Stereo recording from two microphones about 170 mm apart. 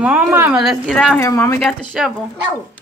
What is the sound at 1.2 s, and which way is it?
Speech, 15° left (ahead or behind).